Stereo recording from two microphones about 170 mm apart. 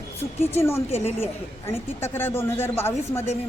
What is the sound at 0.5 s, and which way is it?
Speech, 15° left (ahead or behind).